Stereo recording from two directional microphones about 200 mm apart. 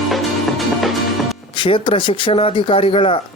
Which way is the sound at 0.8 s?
Centre (ahead or behind).